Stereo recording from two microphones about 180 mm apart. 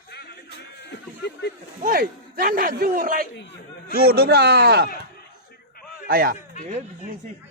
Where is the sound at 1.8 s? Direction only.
55° right (ahead or behind).